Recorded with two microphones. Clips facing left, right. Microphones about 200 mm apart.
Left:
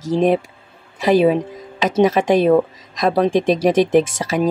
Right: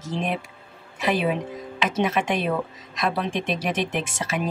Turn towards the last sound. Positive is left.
turn(degrees=40)  # may be behind; listen again after turning